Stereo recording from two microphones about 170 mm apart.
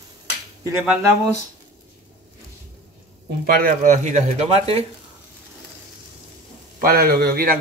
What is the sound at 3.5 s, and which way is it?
Speech, 50° right (ahead or behind).